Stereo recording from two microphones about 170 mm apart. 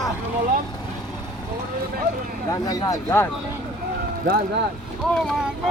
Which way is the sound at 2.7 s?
20° left (ahead or behind).